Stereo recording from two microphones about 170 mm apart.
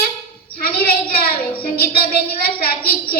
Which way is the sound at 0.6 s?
60° left (ahead or behind).